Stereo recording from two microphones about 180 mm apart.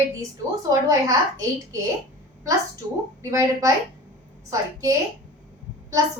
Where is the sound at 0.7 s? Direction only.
20° right (ahead or behind).